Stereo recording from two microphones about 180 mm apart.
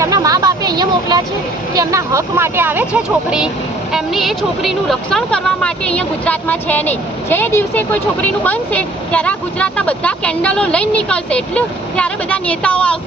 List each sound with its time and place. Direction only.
0.0 s vehicle: 20° right (ahead or behind)
1.7 s speech: 20° right (ahead or behind); by 13.0 s 5° left (ahead or behind)